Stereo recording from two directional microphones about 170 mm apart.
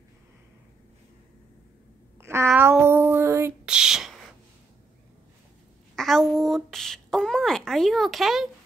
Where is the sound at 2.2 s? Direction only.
15° right (ahead or behind).